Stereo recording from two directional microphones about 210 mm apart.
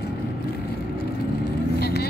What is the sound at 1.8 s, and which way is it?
Vehicle, 50° left (ahead or behind).